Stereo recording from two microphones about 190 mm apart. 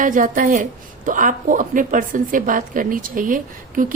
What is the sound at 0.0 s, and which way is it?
A woman's voice, 45° right (ahead or behind).